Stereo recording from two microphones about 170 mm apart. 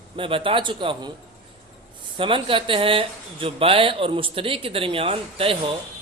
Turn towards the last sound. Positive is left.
turn(degrees=-35)  # may be behind; listen again after turning